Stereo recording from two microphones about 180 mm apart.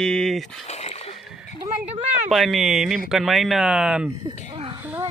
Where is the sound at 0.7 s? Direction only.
35° left (ahead or behind).